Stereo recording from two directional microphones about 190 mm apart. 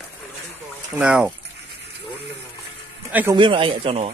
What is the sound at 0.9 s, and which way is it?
Speech, 5° right (ahead or behind).